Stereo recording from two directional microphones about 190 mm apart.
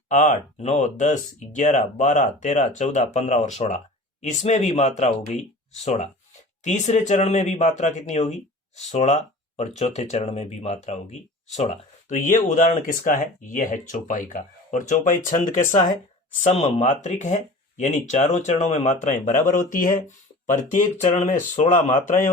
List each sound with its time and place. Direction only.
0.1 s a man's voice: 40° left (ahead or behind)